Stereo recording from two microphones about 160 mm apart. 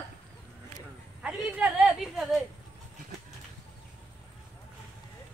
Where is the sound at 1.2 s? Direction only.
5° right (ahead or behind).